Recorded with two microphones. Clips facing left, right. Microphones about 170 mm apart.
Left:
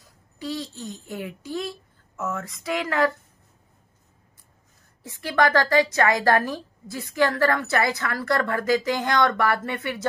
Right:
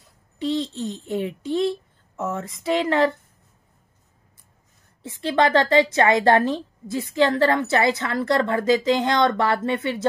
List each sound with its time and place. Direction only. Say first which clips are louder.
0.4 s a woman's voice: right 7 dB; 25° right (ahead or behind)
5.0 s a woman's voice: right 2 dB; 25° right (ahead or behind)